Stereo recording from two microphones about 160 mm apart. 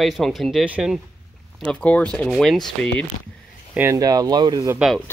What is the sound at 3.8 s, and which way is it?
Speech, 20° right (ahead or behind).